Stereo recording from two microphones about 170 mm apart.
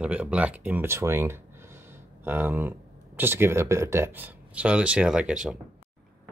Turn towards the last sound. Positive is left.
turn(degrees=-5)  # may be behind; listen again after turning